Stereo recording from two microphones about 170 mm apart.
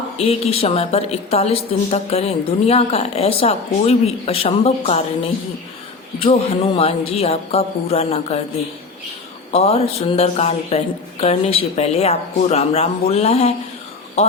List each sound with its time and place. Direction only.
0.2 s a woman's voice: 35° left (ahead or behind)
9.5 s a woman's voice: 35° left (ahead or behind)